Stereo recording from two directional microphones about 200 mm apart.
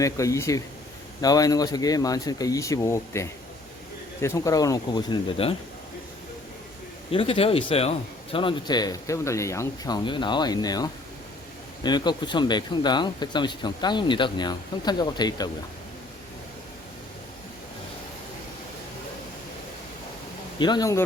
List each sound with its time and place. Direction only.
0.0 s speech: 15° left (ahead or behind)
7.1 s a man's voice: 30° left (ahead or behind)
20.6 s a man's voice: 20° left (ahead or behind)